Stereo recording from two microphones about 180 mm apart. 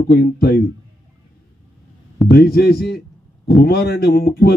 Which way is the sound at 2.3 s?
60° left (ahead or behind).